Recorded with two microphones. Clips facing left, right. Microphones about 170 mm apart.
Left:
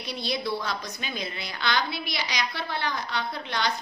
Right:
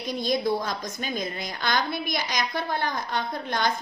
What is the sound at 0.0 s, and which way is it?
A woman's voice, 45° right (ahead or behind).